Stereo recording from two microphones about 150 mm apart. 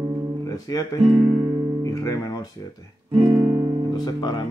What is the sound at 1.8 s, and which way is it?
Music, 25° left (ahead or behind).